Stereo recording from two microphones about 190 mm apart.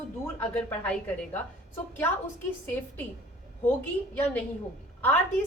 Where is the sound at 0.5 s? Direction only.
10° left (ahead or behind).